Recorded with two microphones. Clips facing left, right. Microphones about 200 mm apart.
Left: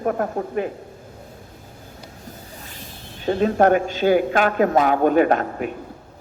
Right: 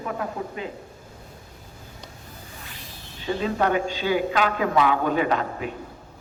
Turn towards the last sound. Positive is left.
turn(degrees=50)  # may be behind; listen again after turning